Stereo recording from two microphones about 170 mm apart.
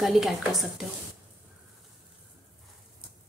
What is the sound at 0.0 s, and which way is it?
Speech, centre (ahead or behind).